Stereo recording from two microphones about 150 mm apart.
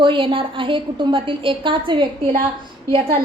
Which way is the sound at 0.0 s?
35° right (ahead or behind).